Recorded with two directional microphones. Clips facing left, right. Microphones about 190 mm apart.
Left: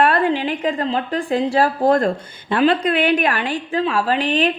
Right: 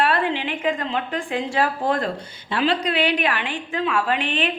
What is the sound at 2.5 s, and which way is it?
A woman's voice, 50° left (ahead or behind).